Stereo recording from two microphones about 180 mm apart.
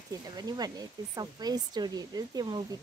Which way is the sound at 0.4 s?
20° right (ahead or behind).